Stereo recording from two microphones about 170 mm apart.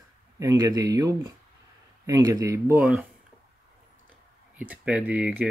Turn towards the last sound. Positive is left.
turn(degrees=-10)  # may be behind; listen again after turning